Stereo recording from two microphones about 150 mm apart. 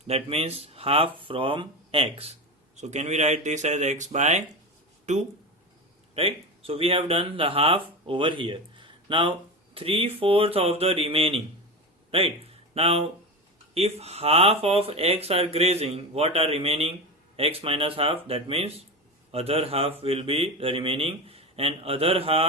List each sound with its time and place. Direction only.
0.1 s speech: 40° right (ahead or behind)
2.7 s a man's voice: 50° right (ahead or behind)
6.1 s speech: 40° right (ahead or behind)